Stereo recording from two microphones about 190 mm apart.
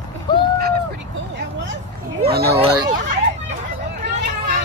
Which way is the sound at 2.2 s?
55° right (ahead or behind).